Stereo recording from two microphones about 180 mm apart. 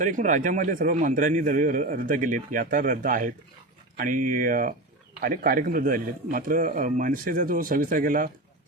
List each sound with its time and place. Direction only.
0.0 s speech: 45° right (ahead or behind)